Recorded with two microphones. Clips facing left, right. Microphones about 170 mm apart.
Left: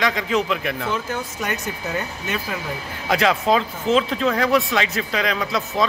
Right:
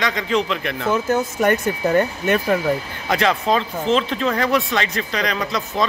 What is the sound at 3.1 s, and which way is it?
Speech, centre (ahead or behind).